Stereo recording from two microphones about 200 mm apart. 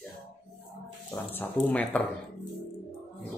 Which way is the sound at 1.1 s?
20° left (ahead or behind).